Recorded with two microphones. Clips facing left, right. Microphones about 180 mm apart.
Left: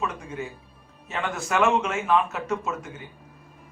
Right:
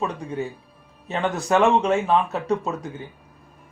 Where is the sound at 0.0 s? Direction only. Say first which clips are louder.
Right 4 dB; 35° right (ahead or behind).